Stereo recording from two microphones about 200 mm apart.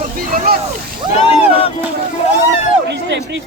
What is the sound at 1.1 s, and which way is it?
Boat, 30° left (ahead or behind).